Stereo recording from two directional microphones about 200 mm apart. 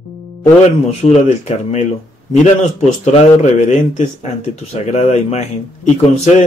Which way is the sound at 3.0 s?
35° left (ahead or behind).